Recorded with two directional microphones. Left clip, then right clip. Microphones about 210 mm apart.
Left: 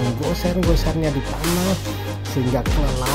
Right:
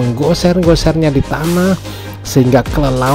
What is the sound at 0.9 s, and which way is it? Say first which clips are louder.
Speech: right 11 dB; 40° right (ahead or behind).